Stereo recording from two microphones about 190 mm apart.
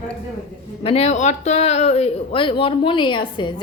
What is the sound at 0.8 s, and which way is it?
Speech, 35° left (ahead or behind).